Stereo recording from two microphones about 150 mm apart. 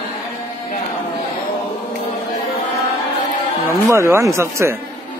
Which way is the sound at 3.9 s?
20° right (ahead or behind).